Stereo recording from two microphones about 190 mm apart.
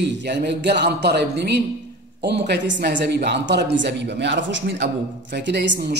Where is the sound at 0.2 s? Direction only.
60° right (ahead or behind).